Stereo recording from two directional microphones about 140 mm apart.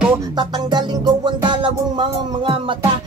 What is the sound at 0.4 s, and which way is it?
Music, 30° right (ahead or behind).